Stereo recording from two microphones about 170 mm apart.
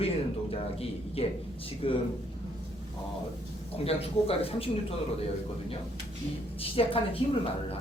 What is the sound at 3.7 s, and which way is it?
A man's voice, 35° left (ahead or behind).